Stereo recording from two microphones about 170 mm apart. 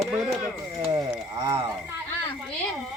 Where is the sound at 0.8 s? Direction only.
25° right (ahead or behind).